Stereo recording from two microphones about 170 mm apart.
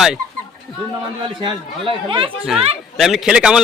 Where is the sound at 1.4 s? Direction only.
30° right (ahead or behind).